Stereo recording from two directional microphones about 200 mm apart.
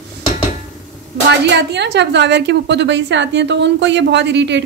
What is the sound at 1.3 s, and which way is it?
A woman's voice, 60° right (ahead or behind).